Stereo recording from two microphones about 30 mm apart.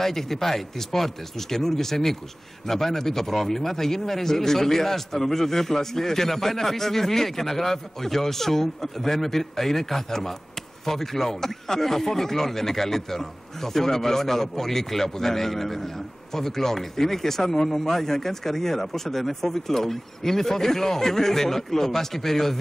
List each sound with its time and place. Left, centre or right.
0.0 s a man's voice: centre